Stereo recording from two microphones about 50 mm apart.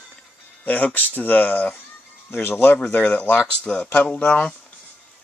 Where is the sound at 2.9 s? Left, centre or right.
Left.